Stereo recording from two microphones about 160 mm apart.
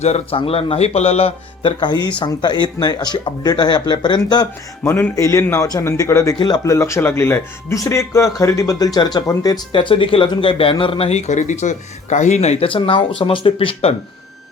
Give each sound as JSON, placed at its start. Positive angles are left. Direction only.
{"t": 0.0, "sound": "a man's voice", "side_deg": 40}
{"t": 4.8, "sound": "a man's voice", "side_deg": 15}